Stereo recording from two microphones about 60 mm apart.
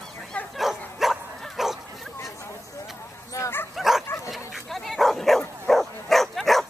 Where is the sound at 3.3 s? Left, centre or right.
Left.